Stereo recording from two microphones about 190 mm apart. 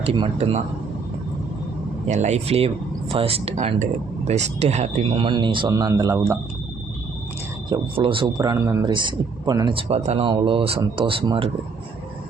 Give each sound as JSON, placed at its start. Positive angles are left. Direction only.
{"t": 0.0, "sound": "speech", "side_deg": -30}
{"t": 2.0, "sound": "a man's voice", "side_deg": -40}
{"t": 7.7, "sound": "a man's voice", "side_deg": -30}